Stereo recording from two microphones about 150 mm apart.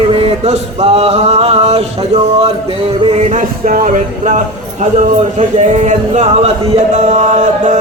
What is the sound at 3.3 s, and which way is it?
Speech, 60° right (ahead or behind).